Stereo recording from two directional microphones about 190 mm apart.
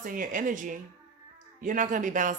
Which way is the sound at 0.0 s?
45° right (ahead or behind).